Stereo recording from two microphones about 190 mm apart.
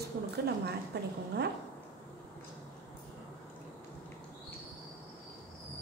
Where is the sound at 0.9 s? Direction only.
60° right (ahead or behind).